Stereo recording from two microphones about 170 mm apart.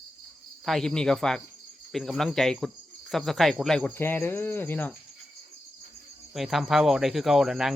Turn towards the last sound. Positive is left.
turn(degrees=0)  # may be behind; listen again after turning